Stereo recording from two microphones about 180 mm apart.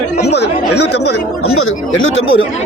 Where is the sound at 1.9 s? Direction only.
90° left.